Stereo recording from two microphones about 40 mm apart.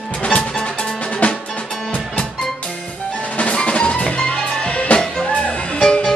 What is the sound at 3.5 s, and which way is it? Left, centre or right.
Music, left.